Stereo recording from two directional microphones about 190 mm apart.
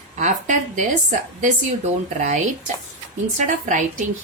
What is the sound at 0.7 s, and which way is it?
Speech, 40° right (ahead or behind).